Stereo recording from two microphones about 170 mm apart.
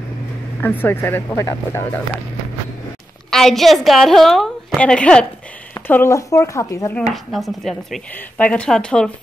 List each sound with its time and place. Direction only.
0.6 s speech: 10° left (ahead or behind)
3.3 s a woman's voice: centre (ahead or behind); by 7.0 s 15° left (ahead or behind)
7.0 s a woman's voice: centre (ahead or behind)